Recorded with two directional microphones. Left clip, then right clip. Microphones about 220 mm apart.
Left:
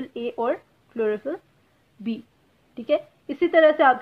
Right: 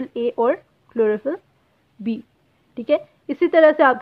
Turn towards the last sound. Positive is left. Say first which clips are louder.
# right 3 dB
turn(degrees=-35)  # may be behind; listen again after turning